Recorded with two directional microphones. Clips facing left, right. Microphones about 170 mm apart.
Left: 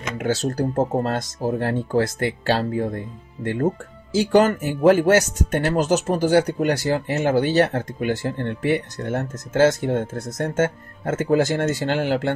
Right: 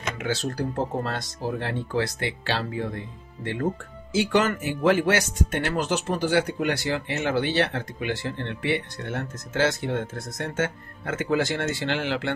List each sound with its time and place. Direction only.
0.2 s speech: 45° left (ahead or behind)
4.1 s speech: 35° left (ahead or behind)